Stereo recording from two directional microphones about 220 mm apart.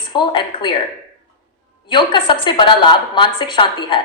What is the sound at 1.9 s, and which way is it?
A woman's voice, 20° left (ahead or behind).